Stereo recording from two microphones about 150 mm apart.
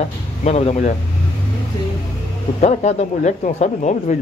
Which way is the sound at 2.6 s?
50° left (ahead or behind).